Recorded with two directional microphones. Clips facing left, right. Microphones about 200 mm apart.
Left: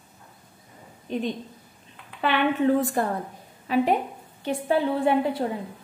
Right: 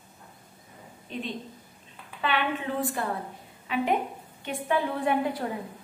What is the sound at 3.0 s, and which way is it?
A woman's voice, 45° left (ahead or behind).